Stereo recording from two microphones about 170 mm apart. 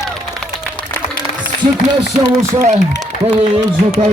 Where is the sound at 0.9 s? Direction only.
15° left (ahead or behind).